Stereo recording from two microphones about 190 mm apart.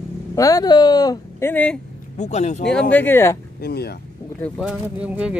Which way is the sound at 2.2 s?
35° left (ahead or behind).